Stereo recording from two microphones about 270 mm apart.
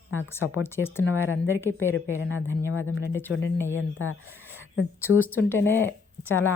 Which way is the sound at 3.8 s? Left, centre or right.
Left.